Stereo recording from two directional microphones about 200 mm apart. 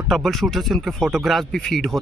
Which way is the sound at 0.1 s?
Centre (ahead or behind).